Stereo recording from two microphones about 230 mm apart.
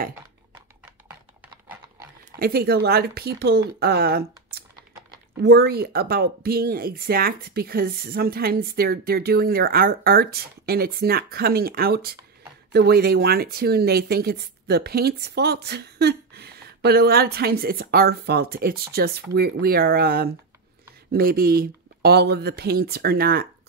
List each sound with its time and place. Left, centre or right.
2.3 s speech: right